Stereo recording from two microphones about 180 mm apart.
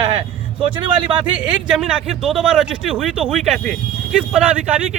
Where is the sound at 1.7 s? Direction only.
5° right (ahead or behind).